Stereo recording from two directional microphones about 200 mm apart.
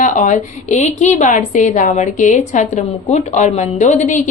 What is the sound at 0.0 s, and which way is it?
A woman's voice, 40° left (ahead or behind).